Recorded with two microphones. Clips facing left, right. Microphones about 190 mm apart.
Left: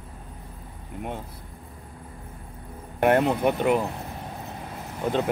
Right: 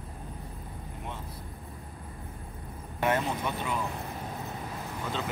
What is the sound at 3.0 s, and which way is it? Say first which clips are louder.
Speech: left 8 dB; 60° left (ahead or behind).